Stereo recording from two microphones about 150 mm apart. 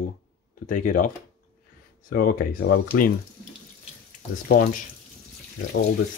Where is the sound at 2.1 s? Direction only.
80° left.